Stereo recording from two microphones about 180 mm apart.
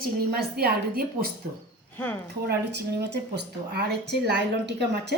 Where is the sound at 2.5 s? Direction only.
65° right (ahead or behind).